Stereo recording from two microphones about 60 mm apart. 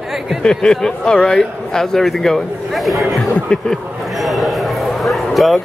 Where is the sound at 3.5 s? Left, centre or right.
Centre.